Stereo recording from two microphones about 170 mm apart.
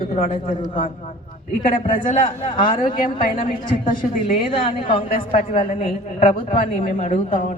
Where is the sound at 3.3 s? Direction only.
30° left (ahead or behind).